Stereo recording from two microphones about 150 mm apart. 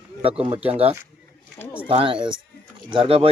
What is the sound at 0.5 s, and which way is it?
Speech, 10° right (ahead or behind).